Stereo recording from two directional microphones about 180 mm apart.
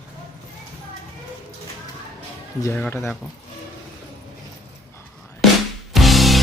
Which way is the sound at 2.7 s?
10° left (ahead or behind).